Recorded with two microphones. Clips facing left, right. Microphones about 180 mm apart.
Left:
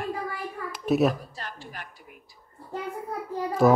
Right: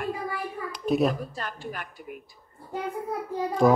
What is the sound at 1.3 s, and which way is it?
Speech, 55° right (ahead or behind).